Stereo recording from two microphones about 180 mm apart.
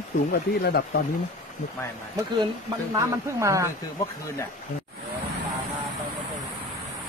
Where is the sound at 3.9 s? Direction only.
15° left (ahead or behind).